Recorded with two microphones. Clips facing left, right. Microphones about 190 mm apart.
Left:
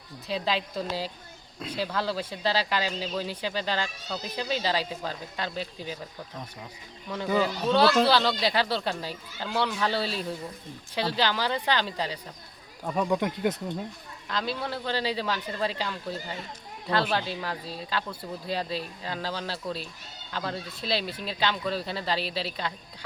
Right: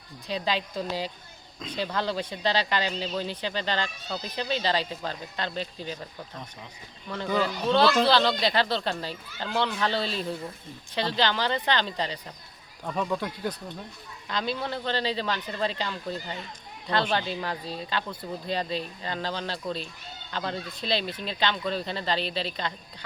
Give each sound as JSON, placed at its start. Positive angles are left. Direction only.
{"t": 0.3, "sound": "speech", "side_deg": 0}
{"t": 7.1, "sound": "speech", "side_deg": 10}
{"t": 14.3, "sound": "speech", "side_deg": 0}